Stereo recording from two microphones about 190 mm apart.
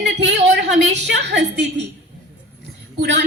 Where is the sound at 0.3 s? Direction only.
70° right (ahead or behind).